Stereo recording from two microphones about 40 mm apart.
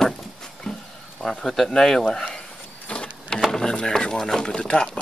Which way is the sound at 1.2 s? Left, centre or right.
Centre.